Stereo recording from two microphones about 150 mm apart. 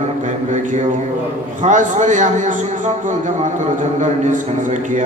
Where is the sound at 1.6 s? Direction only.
55° right (ahead or behind).